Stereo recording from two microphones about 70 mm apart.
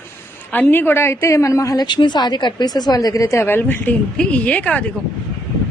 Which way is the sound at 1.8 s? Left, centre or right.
Left.